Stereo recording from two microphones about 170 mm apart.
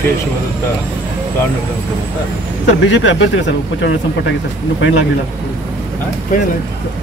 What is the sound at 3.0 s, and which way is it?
Speech, 90° left.